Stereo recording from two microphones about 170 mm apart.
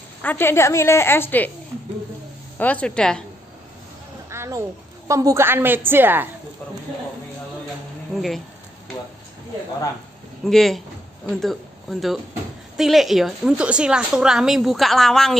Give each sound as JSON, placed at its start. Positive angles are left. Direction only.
{"t": 0.2, "sound": "a woman's voice", "side_deg": 10}
{"t": 2.5, "sound": "a woman's voice", "side_deg": 10}
{"t": 4.3, "sound": "a woman's voice", "side_deg": -15}
{"t": 8.1, "sound": "speech", "side_deg": 0}
{"t": 10.4, "sound": "a woman's voice", "side_deg": 0}